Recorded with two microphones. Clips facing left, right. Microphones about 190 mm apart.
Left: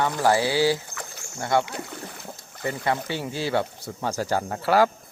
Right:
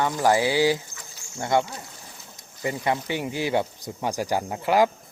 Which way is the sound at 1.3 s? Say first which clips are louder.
Even; 20° right (ahead or behind).